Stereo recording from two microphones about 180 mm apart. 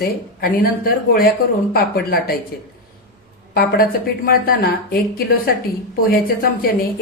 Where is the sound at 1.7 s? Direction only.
60° left (ahead or behind).